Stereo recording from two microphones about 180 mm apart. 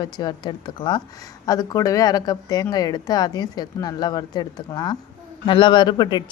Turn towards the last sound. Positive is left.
turn(degrees=25)  # may be behind; listen again after turning